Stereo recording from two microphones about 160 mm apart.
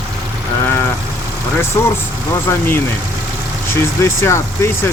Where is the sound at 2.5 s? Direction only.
15° left (ahead or behind).